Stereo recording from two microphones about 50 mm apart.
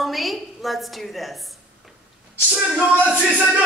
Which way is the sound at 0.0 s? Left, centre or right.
Centre.